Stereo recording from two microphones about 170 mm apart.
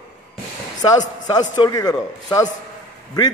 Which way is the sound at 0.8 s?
20° left (ahead or behind).